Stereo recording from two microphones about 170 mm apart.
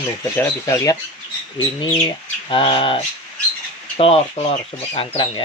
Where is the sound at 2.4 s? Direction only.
30° left (ahead or behind).